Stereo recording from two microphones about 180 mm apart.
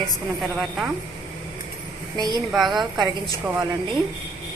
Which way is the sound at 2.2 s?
20° right (ahead or behind).